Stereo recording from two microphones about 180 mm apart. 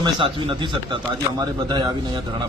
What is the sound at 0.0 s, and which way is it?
Speech, 30° right (ahead or behind).